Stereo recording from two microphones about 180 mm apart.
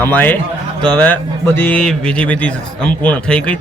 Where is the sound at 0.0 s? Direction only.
10° left (ahead or behind).